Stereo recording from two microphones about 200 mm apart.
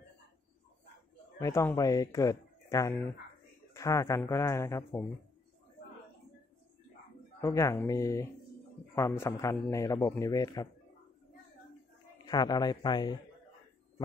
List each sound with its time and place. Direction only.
1.4 s a man's voice: 10° left (ahead or behind)
7.4 s a man's voice: 15° left (ahead or behind)
12.3 s a man's voice: 20° left (ahead or behind)